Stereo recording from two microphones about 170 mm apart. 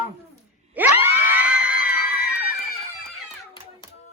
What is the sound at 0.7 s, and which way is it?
Screaming, 10° right (ahead or behind).